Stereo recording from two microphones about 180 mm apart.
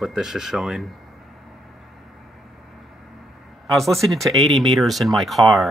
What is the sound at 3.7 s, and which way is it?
Speech, centre (ahead or behind).